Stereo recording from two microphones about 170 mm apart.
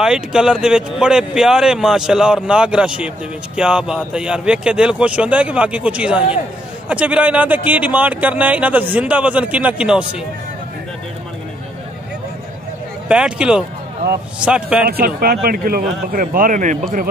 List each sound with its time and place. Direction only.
0.0 s speech: 5° right (ahead or behind)
13.1 s speech: 5° right (ahead or behind)
14.9 s speech: 65° right (ahead or behind)